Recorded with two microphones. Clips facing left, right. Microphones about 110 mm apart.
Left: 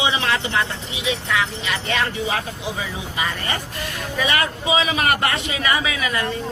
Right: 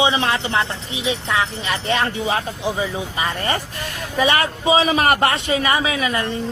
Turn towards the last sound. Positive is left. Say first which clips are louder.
# right 2 dB
turn(degrees=-30)  # may be behind; listen again after turning